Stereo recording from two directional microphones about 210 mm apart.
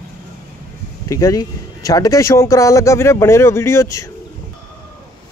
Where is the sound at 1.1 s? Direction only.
15° left (ahead or behind).